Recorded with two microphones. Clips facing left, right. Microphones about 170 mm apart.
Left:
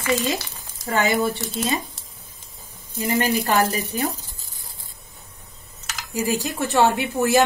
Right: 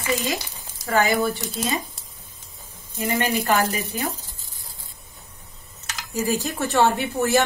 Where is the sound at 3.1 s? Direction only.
35° left (ahead or behind).